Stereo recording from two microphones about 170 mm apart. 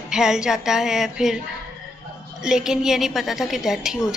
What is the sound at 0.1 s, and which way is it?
A woman's voice, 5° right (ahead or behind).